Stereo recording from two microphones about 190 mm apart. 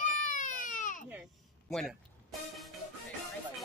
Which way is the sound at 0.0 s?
45° left (ahead or behind).